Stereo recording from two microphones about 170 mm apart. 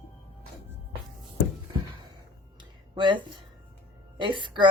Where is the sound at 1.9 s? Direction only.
25° right (ahead or behind).